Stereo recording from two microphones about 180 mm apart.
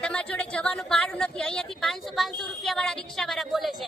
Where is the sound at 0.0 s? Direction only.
5° left (ahead or behind).